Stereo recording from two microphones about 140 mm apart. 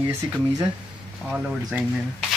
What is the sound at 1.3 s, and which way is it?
Speech, 5° right (ahead or behind).